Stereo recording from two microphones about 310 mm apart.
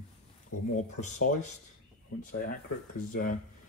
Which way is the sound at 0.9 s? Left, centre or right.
Left.